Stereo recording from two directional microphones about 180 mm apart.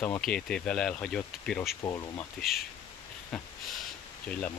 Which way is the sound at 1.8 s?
20° left (ahead or behind).